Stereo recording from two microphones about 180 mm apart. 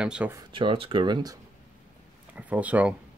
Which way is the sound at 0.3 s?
25° right (ahead or behind).